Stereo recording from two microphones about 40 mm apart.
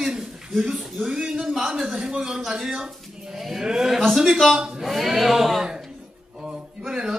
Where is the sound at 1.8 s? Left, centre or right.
Centre.